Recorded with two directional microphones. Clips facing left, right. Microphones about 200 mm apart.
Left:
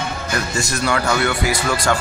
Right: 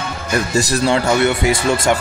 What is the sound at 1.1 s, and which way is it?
Speech, 20° right (ahead or behind).